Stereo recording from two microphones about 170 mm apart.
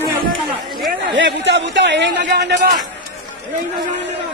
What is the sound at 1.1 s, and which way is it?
A man's voice, 90° right.